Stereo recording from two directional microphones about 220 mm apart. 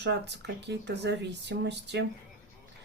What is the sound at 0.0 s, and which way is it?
Speech, 50° right (ahead or behind).